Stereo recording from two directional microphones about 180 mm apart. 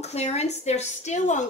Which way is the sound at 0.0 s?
35° left (ahead or behind).